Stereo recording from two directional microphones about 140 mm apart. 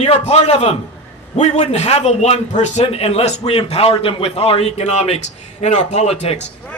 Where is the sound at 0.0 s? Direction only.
50° left (ahead or behind).